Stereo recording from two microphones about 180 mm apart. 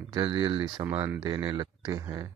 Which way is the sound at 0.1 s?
25° right (ahead or behind).